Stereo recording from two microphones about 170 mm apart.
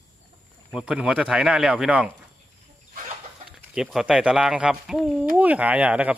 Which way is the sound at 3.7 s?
Centre (ahead or behind).